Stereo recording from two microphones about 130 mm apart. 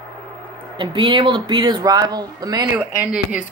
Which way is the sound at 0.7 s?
40° right (ahead or behind).